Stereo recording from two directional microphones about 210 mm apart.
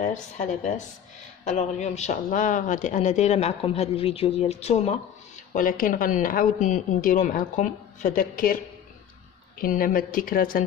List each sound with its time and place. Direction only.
0.0 s speech: 35° left (ahead or behind)
9.6 s a woman's voice: 40° left (ahead or behind)